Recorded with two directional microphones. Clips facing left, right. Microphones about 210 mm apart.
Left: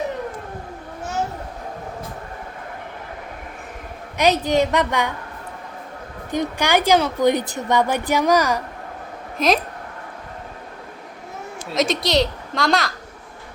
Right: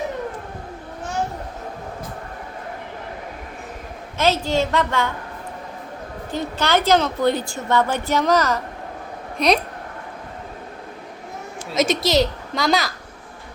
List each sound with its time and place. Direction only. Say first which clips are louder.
4.2 s a woman's voice: left 2 dB; 15° left (ahead or behind)
6.3 s a woman's voice: left 1 dB; 15° left (ahead or behind)
9.4 s a woman's voice: even; centre (ahead or behind)
11.7 s a woman's voice: right 1 dB; centre (ahead or behind)